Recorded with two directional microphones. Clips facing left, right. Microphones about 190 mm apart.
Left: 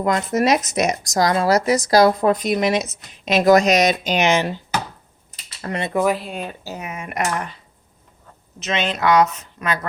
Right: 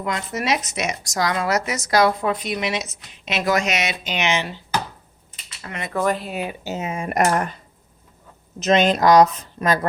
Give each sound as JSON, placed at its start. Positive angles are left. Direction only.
{"t": 0.0, "sound": "speech", "side_deg": 45}
{"t": 5.6, "sound": "speech", "side_deg": 35}
{"t": 5.9, "sound": "speech", "side_deg": 10}
{"t": 6.7, "sound": "speech", "side_deg": -25}
{"t": 8.5, "sound": "a woman's voice", "side_deg": -40}